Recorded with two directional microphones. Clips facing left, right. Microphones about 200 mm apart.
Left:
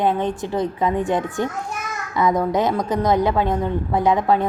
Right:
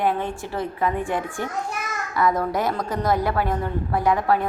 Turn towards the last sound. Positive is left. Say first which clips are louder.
# left 3 dB
turn(degrees=20)  # may be behind; listen again after turning